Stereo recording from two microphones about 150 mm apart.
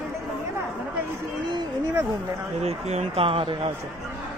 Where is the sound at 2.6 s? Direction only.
50° right (ahead or behind).